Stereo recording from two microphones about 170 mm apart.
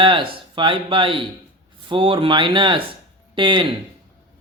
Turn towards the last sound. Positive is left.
turn(degrees=-30)  # may be behind; listen again after turning